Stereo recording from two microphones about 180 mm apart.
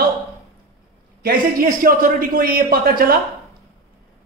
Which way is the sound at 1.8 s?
50° right (ahead or behind).